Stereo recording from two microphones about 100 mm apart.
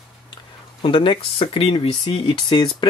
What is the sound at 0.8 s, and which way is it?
Speech, 55° left (ahead or behind).